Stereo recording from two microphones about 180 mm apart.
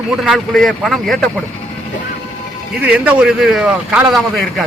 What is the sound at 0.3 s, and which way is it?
A man's voice, centre (ahead or behind).